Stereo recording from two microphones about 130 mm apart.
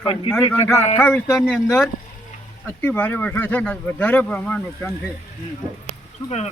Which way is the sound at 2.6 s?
15° left (ahead or behind).